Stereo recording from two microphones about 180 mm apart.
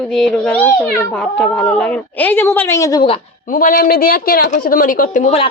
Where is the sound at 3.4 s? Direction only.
50° left (ahead or behind).